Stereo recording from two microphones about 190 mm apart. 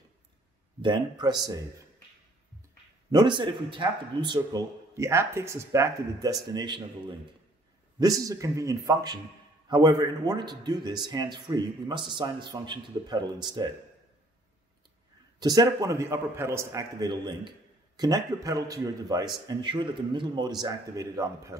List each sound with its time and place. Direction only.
0.8 s a man's voice: 20° right (ahead or behind)
3.1 s a man's voice: 20° right (ahead or behind)
15.3 s a man's voice: 20° right (ahead or behind)